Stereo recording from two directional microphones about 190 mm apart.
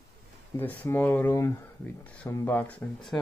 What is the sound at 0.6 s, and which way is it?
Speech, 10° left (ahead or behind).